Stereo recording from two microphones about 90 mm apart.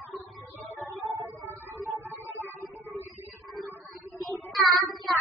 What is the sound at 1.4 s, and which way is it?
Music, 25° right (ahead or behind).